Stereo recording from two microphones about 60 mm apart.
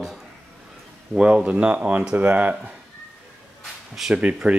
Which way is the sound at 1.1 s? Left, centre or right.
Right.